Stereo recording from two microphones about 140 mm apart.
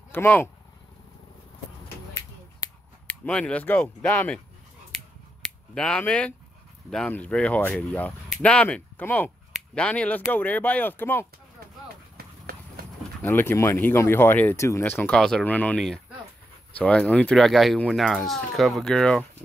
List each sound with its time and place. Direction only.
0.1 s speech: 15° left (ahead or behind)
3.1 s speech: 5° left (ahead or behind)
5.8 s speech: 5° left (ahead or behind)
12.2 s run: 90° right
13.2 s speech: 15° left (ahead or behind)